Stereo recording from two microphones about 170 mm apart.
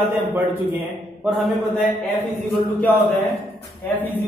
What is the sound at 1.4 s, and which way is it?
Speech, centre (ahead or behind).